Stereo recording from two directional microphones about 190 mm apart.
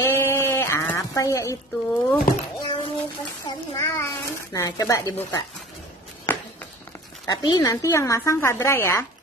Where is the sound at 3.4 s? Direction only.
15° left (ahead or behind).